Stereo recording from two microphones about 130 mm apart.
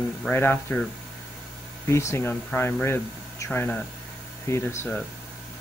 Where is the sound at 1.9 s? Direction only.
20° left (ahead or behind).